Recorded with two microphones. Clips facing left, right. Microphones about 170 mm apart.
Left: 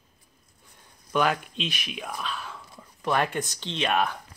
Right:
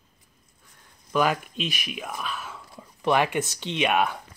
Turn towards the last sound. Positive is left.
turn(degrees=-10)  # may be behind; listen again after turning